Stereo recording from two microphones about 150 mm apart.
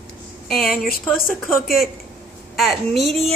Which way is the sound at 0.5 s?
75° left (ahead or behind).